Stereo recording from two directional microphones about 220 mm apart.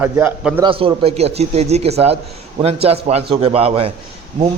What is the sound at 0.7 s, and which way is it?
A man's voice, 25° right (ahead or behind).